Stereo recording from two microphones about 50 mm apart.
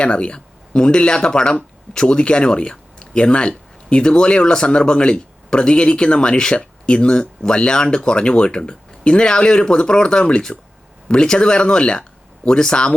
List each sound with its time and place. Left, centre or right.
0.0 s speech: centre